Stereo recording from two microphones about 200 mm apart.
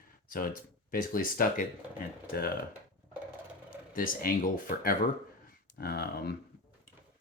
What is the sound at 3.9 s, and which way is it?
Speech, 45° left (ahead or behind).